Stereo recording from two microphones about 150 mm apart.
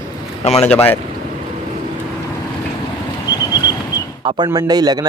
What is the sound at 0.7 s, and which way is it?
Speech, 15° left (ahead or behind).